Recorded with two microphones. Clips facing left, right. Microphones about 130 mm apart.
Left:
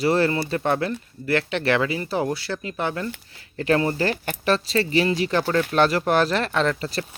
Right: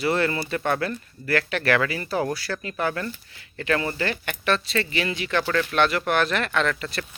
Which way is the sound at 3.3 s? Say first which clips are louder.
Left 4 dB; 35° left (ahead or behind).